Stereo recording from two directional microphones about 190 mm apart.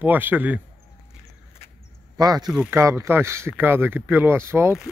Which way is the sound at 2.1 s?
20° right (ahead or behind).